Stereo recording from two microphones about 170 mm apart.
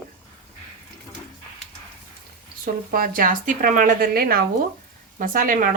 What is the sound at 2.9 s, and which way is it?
Speech, 55° right (ahead or behind).